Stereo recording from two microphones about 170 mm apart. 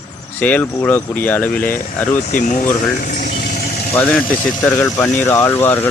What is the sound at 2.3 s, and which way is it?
Speech, 50° left (ahead or behind).